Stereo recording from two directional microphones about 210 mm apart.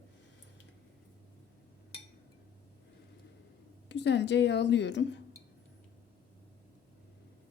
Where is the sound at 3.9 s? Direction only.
55° left (ahead or behind).